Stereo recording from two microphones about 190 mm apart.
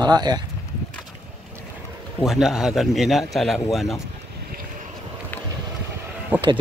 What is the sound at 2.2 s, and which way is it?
Speech, centre (ahead or behind).